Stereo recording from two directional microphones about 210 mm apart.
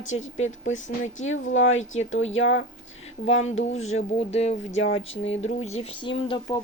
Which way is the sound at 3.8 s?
30° left (ahead or behind).